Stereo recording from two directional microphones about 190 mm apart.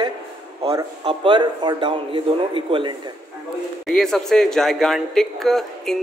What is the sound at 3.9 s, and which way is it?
A man's voice, centre (ahead or behind).